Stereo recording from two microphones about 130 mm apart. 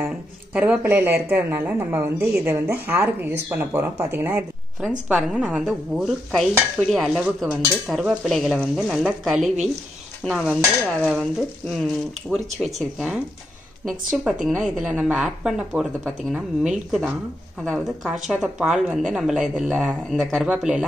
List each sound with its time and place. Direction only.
0.0 s speech: 10° right (ahead or behind); by 11.2 s 5° left (ahead or behind)
12.3 s speech: 10° right (ahead or behind)